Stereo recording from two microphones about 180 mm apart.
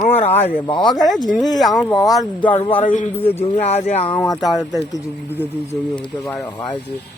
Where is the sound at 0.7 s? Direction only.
25° left (ahead or behind).